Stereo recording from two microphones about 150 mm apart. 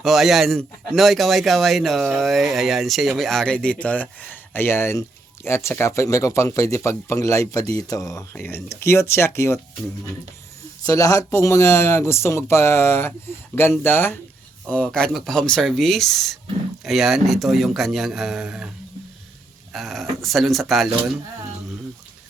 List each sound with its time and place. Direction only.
0.0 s a man's voice: centre (ahead or behind); by 9.6 s 15° left (ahead or behind)
10.8 s a man's voice: 20° left (ahead or behind); by 18.7 s 5° right (ahead or behind)
19.7 s a man's voice: centre (ahead or behind)